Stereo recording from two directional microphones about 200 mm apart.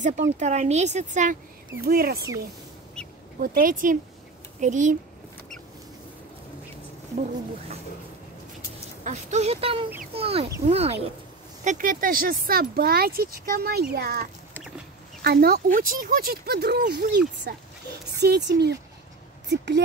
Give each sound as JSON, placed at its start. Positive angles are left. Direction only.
{"t": 0.0, "sound": "speech", "side_deg": -35}
{"t": 1.9, "sound": "speech", "side_deg": -50}
{"t": 3.0, "sound": "duck", "side_deg": 5}
{"t": 3.3, "sound": "speech", "side_deg": -45}
{"t": 9.0, "sound": "speech", "side_deg": -35}
{"t": 15.2, "sound": "speech", "side_deg": -50}